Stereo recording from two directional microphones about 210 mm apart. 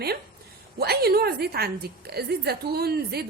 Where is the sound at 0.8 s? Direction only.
50° right (ahead or behind).